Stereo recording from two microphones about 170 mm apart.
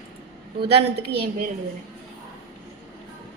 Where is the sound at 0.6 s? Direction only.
35° right (ahead or behind).